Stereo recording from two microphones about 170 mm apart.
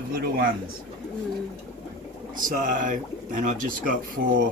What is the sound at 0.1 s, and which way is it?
Speech, 60° right (ahead or behind).